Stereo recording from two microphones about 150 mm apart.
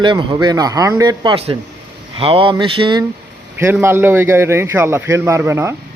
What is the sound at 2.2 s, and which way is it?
Speech, 35° right (ahead or behind).